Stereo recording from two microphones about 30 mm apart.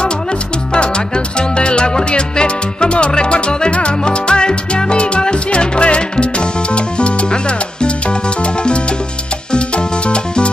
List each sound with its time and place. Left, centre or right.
0.7 s music: left